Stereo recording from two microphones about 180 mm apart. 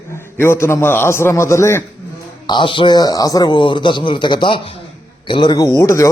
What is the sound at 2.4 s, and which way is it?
A man's voice, 25° left (ahead or behind).